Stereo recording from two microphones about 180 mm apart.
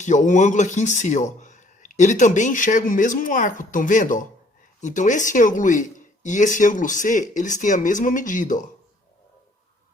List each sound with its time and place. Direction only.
0.0 s speech: 45° left (ahead or behind)